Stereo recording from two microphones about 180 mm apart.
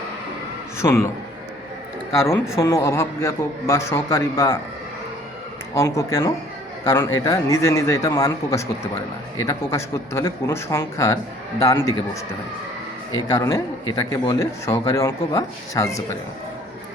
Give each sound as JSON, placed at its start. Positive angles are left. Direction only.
{"t": 0.8, "sound": "speech", "side_deg": 15}
{"t": 2.1, "sound": "speech", "side_deg": 15}
{"t": 5.7, "sound": "speech", "side_deg": 15}
{"t": 13.3, "sound": "speech", "side_deg": 15}